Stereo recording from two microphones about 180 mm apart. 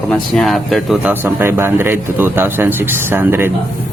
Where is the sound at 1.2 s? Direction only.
15° right (ahead or behind).